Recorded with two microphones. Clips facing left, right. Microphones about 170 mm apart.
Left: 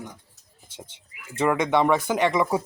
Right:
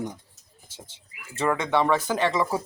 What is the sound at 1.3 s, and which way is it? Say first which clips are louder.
Speech: left 2 dB; 15° left (ahead or behind).